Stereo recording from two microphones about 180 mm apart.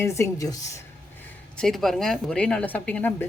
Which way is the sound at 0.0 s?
15° left (ahead or behind).